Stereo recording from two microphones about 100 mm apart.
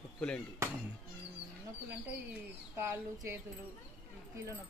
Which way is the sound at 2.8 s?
25° right (ahead or behind).